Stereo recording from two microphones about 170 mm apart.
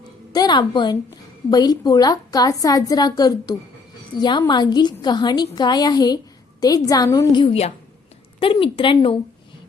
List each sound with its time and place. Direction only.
0.3 s a woman's voice: 25° left (ahead or behind)